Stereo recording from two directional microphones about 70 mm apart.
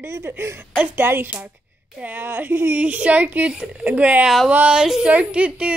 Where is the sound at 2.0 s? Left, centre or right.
Right.